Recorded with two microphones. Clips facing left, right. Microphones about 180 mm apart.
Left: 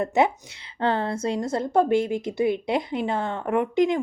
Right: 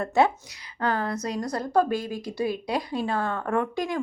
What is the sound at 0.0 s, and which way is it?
A woman's voice, 20° left (ahead or behind).